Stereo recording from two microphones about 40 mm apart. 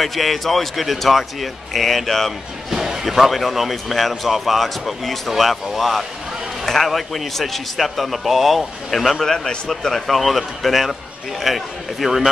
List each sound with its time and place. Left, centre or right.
0.0 s a man's voice: centre
2.7 s a man's voice: centre